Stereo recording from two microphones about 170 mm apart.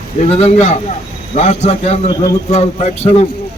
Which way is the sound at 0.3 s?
40° left (ahead or behind).